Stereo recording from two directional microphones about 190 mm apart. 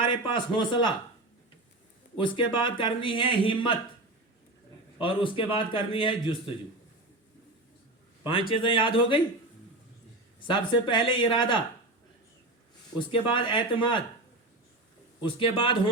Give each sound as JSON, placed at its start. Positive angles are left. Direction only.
{"t": 0.0, "sound": "speech", "side_deg": 25}
{"t": 2.1, "sound": "speech", "side_deg": 25}
{"t": 4.9, "sound": "speech", "side_deg": 25}
{"t": 8.2, "sound": "speech", "side_deg": 25}
{"t": 10.4, "sound": "speech", "side_deg": 25}
{"t": 13.1, "sound": "speech", "side_deg": 25}
{"t": 15.2, "sound": "speech", "side_deg": 25}